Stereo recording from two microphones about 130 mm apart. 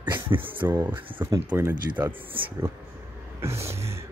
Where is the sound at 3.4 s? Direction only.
20° right (ahead or behind).